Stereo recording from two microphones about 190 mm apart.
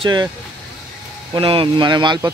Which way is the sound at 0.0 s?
20° right (ahead or behind).